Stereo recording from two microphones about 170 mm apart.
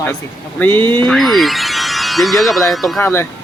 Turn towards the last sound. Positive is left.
turn(degrees=15)  # may be behind; listen again after turning